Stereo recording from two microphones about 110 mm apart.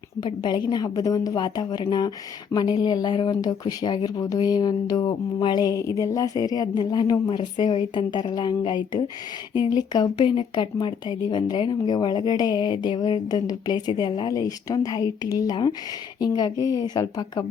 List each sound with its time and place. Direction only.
0.2 s speech: 40° left (ahead or behind)